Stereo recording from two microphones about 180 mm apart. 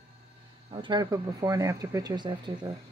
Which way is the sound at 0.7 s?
25° right (ahead or behind).